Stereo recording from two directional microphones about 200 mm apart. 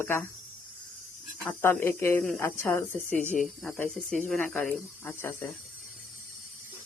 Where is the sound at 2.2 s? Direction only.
Centre (ahead or behind).